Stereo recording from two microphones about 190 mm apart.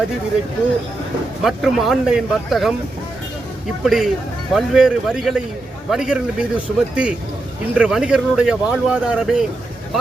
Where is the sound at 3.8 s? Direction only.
Centre (ahead or behind).